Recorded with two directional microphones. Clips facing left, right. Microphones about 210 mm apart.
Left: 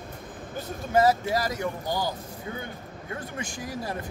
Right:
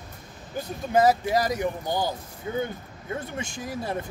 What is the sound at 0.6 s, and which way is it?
Speech, 10° right (ahead or behind).